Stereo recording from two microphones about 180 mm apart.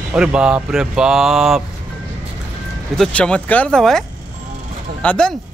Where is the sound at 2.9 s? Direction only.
5° left (ahead or behind).